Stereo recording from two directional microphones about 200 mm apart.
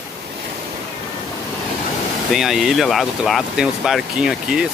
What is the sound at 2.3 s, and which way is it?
Speech, centre (ahead or behind).